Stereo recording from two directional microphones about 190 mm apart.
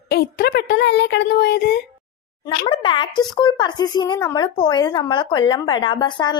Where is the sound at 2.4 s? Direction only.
25° left (ahead or behind).